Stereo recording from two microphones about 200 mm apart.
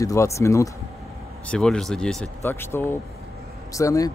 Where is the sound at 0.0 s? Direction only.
15° left (ahead or behind).